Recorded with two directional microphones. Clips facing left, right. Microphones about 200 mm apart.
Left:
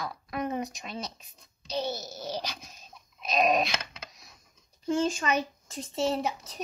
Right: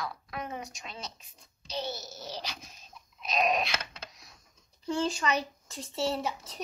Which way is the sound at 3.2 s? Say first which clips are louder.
Left 3 dB; 45° left (ahead or behind).